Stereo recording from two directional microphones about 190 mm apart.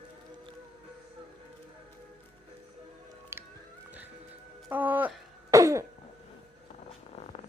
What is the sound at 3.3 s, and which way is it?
Music, 15° right (ahead or behind).